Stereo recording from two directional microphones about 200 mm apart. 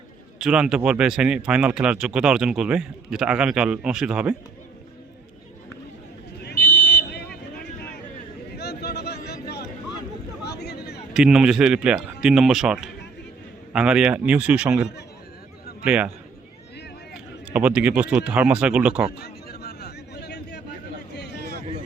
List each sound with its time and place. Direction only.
0.3 s speech: 5° right (ahead or behind)
6.7 s vehicle: 10° left (ahead or behind)
6.9 s vehicle: 55° left (ahead or behind)
7.6 s a sound: 55° left (ahead or behind)
11.1 s speech: 5° right (ahead or behind)
17.5 s speech: 5° right (ahead or behind)
19.2 s a sound: 50° left (ahead or behind)